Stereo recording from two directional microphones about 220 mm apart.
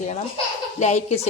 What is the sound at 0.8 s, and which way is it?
Speech, 30° left (ahead or behind).